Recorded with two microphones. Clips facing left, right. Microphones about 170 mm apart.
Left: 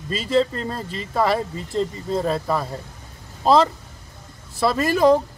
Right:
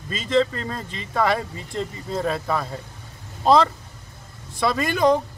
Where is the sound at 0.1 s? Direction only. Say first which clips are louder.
Left 1 dB; 5° left (ahead or behind).